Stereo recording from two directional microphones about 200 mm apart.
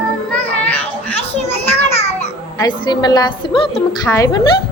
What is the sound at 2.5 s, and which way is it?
A woman's voice, 20° left (ahead or behind).